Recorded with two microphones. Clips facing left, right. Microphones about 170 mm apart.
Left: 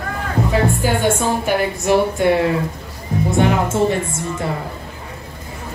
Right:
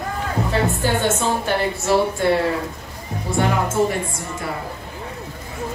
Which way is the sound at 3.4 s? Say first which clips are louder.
Left 2 dB; 25° left (ahead or behind).